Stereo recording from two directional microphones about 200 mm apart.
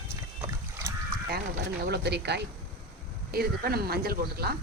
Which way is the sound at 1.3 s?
55° right (ahead or behind).